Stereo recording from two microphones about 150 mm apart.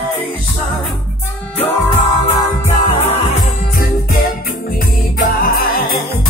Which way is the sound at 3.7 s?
75° left (ahead or behind).